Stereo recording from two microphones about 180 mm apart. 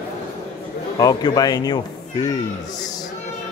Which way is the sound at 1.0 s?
20° left (ahead or behind).